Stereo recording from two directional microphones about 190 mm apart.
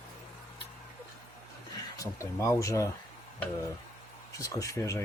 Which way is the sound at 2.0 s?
15° left (ahead or behind).